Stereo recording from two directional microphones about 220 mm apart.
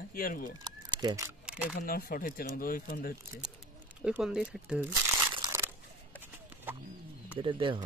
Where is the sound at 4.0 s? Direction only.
5° right (ahead or behind).